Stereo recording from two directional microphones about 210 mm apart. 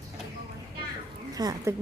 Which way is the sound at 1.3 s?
15° right (ahead or behind).